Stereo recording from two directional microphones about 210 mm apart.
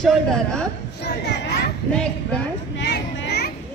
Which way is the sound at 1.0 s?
55° left (ahead or behind).